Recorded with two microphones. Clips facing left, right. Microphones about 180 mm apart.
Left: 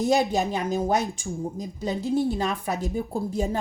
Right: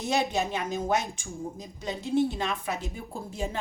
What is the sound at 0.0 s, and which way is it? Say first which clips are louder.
A woman's voice: left 5 dB; 35° left (ahead or behind).